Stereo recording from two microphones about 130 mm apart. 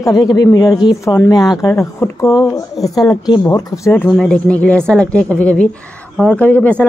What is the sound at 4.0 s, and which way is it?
Speech, 10° left (ahead or behind).